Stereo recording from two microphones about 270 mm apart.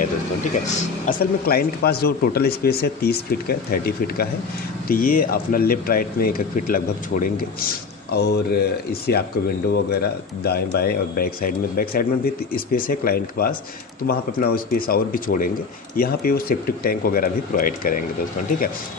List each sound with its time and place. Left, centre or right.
1.0 s speech: left
10.4 s speech: left